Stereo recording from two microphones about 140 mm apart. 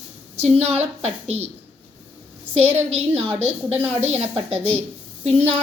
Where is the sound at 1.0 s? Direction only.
50° right (ahead or behind).